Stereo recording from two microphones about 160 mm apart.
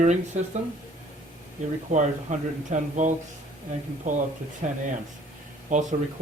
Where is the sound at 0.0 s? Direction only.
50° right (ahead or behind).